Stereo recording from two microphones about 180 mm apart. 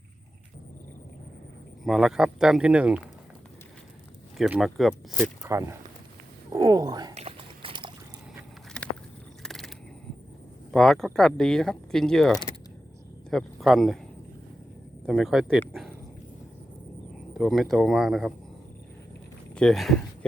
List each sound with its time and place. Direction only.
1.8 s speech: centre (ahead or behind)
4.4 s speech: 5° right (ahead or behind)
5.4 s speech: 15° right (ahead or behind)
7.1 s a sound: 35° right (ahead or behind)
8.8 s a sound: 5° left (ahead or behind)
9.4 s crow: centre (ahead or behind)
10.7 s speech: centre (ahead or behind)
15.0 s speech: centre (ahead or behind)
17.3 s speech: centre (ahead or behind)
19.5 s speech: centre (ahead or behind)